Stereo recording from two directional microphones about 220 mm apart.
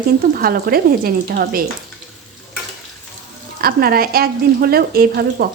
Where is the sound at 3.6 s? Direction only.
40° right (ahead or behind).